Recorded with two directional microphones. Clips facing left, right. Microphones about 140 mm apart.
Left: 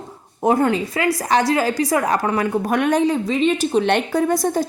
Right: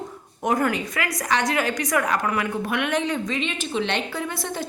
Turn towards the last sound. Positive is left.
turn(degrees=40)  # may be behind; listen again after turning